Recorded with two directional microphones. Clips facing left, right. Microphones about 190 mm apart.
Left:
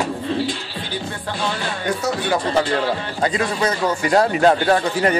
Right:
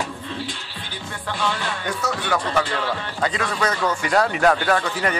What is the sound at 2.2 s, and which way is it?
Speech, 35° left (ahead or behind).